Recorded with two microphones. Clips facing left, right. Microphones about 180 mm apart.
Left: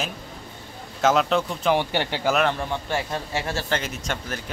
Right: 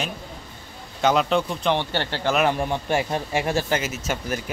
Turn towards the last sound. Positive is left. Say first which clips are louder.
# right 3 dB
turn(degrees=-5)  # may be behind; listen again after turning